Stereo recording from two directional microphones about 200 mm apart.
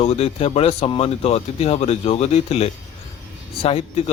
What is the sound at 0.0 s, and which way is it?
Speech, 30° left (ahead or behind).